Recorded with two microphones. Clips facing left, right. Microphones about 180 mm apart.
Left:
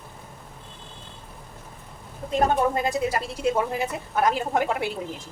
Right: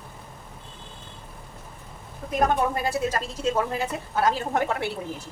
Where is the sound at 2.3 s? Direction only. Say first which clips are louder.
Left 1 dB; 25° left (ahead or behind).